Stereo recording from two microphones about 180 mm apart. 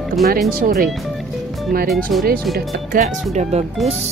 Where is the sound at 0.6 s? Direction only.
50° right (ahead or behind).